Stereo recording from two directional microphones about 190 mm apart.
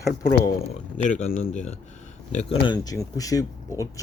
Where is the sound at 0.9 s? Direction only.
40° left (ahead or behind).